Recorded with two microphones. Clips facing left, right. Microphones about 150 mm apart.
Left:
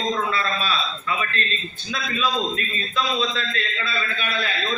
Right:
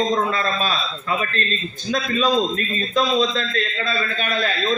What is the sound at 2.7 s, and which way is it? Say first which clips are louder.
A man's voice: right 7 dB; 40° right (ahead or behind).